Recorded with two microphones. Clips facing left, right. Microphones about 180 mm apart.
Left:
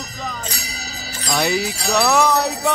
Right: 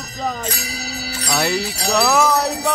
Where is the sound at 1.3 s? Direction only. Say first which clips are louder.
Left 1 dB; 5° right (ahead or behind).